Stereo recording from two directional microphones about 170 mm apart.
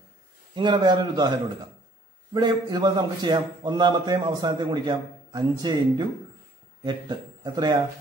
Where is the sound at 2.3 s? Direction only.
25° right (ahead or behind).